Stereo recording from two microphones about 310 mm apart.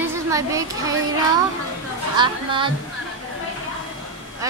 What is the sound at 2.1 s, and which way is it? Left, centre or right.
Speech, centre.